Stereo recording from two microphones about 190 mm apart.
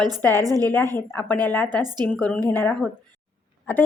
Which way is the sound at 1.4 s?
10° left (ahead or behind).